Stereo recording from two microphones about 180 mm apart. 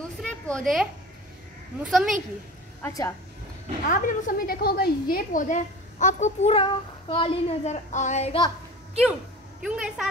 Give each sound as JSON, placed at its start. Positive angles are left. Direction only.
{"t": 0.2, "sound": "a sound", "side_deg": 5}
{"t": 1.9, "sound": "a woman's voice", "side_deg": 0}
{"t": 2.8, "sound": "a woman's voice", "side_deg": 20}
{"t": 3.9, "sound": "a woman's voice", "side_deg": 55}
{"t": 9.6, "sound": "a woman's voice", "side_deg": -5}